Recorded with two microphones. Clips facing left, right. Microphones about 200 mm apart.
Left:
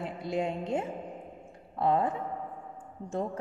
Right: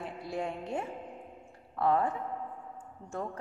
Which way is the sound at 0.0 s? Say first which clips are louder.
Left 4 dB; 20° left (ahead or behind).